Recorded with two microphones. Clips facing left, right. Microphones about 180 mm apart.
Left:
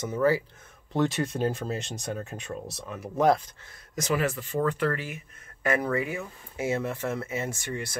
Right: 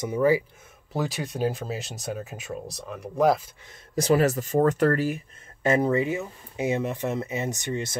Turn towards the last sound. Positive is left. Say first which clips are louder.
# right 4 dB
turn(degrees=-20)  # may be behind; listen again after turning